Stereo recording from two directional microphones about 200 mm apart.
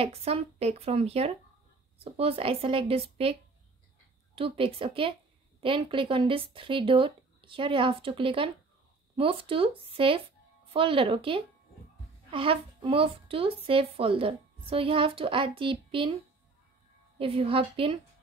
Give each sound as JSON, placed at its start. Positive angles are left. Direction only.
{"t": 0.0, "sound": "a woman's voice", "side_deg": -30}
{"t": 4.4, "sound": "a woman's voice", "side_deg": -25}
{"t": 17.2, "sound": "a woman's voice", "side_deg": -25}